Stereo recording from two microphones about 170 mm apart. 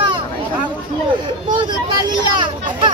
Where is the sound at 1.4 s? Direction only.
25° right (ahead or behind).